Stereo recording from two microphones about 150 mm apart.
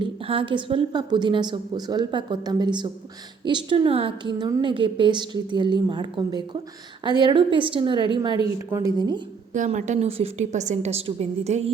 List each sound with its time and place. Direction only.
0.0 s a woman's voice: 35° right (ahead or behind)
8.5 s a woman's voice: 20° right (ahead or behind)
9.5 s a woman's voice: 55° right (ahead or behind)